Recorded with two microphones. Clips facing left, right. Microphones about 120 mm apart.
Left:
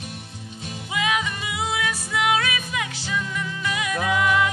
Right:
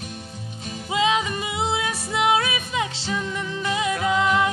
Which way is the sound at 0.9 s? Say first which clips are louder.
Right 4 dB; 25° right (ahead or behind).